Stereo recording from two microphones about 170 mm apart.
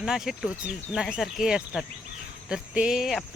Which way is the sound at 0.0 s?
Centre (ahead or behind).